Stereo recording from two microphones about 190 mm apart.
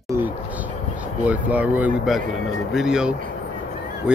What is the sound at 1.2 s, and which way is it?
Speech, 10° right (ahead or behind).